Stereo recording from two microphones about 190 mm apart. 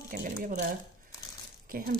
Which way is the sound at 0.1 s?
45° right (ahead or behind).